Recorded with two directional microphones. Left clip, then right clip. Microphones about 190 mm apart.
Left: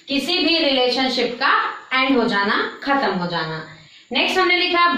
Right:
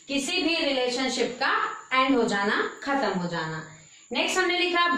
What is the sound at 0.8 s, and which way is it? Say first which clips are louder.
A woman's voice: left 7 dB; 15° right (ahead or behind).